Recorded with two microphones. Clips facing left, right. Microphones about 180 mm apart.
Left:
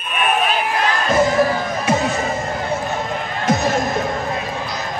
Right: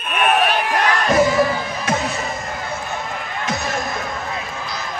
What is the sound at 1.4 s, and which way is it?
Music, 40° left (ahead or behind).